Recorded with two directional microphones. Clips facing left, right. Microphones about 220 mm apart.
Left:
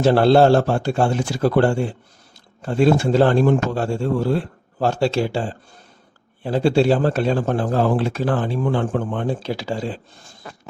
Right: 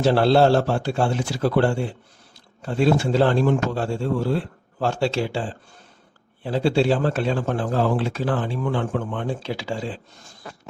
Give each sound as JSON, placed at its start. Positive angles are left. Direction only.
{"t": 0.0, "sound": "a man's voice", "side_deg": 50}